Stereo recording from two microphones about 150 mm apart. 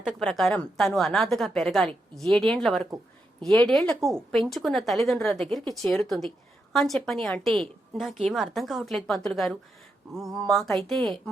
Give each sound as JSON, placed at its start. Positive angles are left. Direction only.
{"t": 0.0, "sound": "a woman's voice", "side_deg": 0}